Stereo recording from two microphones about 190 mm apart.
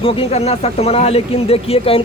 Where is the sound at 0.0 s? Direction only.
30° left (ahead or behind).